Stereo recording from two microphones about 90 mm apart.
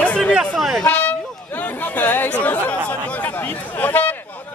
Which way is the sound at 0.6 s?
Centre (ahead or behind).